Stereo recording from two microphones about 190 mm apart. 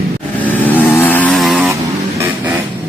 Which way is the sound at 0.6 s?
10° left (ahead or behind).